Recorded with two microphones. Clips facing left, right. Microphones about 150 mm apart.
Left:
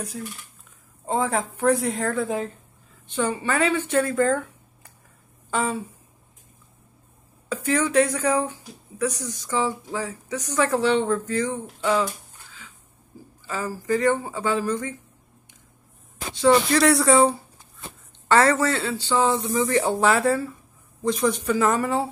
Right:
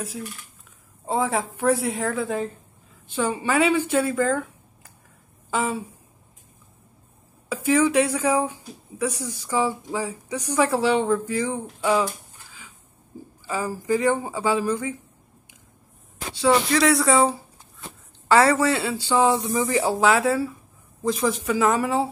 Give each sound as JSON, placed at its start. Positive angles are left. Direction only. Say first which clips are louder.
{"t": 1.0, "sound": "a woman's voice", "louder": "even", "side_deg": -5}
{"t": 3.1, "sound": "a woman's voice", "louder": "right 1 dB", "side_deg": -10}
{"t": 7.4, "sound": "speech", "louder": "right 4 dB", "side_deg": -5}
{"t": 13.1, "sound": "a sound", "louder": "right 5 dB", "side_deg": -25}
{"t": 13.5, "sound": "speech", "louder": "right 1 dB", "side_deg": -15}
{"t": 16.4, "sound": "a woman's voice", "louder": "left 1 dB", "side_deg": 0}